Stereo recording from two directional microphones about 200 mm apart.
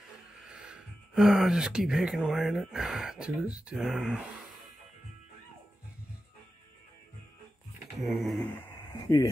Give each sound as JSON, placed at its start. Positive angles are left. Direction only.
{"t": 0.5, "sound": "speech", "side_deg": -5}
{"t": 8.0, "sound": "a sound", "side_deg": 0}
{"t": 9.0, "sound": "speech", "side_deg": 20}